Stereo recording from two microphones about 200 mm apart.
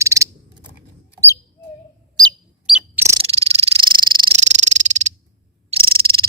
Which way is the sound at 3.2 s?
30° right (ahead or behind).